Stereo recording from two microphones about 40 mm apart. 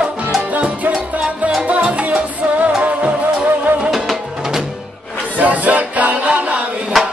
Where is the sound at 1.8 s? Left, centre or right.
Right.